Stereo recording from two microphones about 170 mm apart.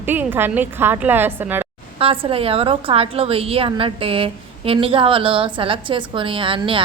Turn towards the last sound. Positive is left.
turn(degrees=-30)  # may be behind; listen again after turning